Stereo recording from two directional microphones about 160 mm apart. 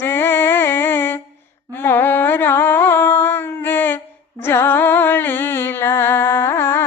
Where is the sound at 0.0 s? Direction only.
15° left (ahead or behind).